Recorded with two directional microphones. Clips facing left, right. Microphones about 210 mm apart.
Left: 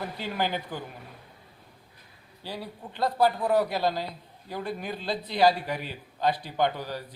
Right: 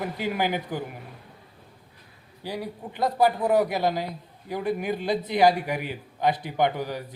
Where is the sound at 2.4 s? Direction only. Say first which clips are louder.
Right 5 dB; 15° right (ahead or behind).